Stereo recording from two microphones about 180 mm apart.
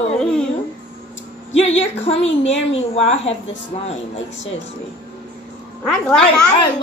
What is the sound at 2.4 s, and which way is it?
Speech, 90° left.